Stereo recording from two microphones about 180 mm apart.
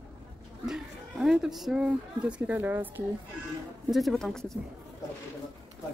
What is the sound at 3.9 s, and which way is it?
Speech, centre (ahead or behind).